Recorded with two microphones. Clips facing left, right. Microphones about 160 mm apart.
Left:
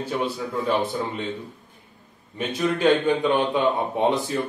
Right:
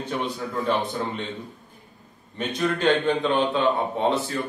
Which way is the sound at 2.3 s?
10° left (ahead or behind).